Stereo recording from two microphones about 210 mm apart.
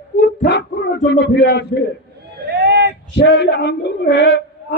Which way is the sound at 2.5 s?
50° right (ahead or behind).